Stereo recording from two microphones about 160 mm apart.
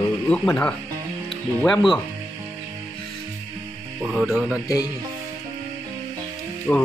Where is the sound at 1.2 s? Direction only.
Centre (ahead or behind).